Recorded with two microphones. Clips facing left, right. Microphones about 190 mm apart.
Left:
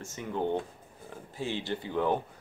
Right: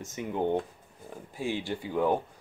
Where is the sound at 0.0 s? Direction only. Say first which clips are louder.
Right 2 dB; 15° right (ahead or behind).